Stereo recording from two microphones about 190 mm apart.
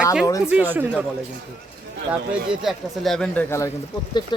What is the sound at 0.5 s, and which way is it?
Speech, 10° right (ahead or behind).